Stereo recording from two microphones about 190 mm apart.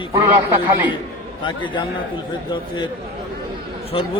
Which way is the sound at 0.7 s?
10° right (ahead or behind).